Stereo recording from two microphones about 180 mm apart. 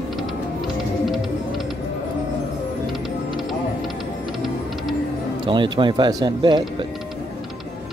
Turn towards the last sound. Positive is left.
turn(degrees=-25)  # may be behind; listen again after turning